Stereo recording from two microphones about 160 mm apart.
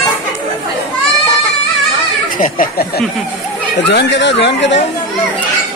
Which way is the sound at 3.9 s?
90° left.